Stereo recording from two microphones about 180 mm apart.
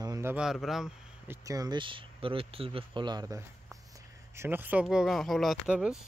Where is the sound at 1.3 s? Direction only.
20° right (ahead or behind); by 5.9 s 5° right (ahead or behind).